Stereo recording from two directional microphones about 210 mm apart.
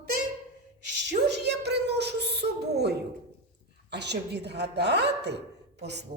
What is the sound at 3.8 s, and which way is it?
A woman's voice, 55° right (ahead or behind).